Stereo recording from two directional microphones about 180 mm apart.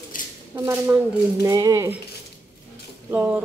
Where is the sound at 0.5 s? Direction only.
10° right (ahead or behind).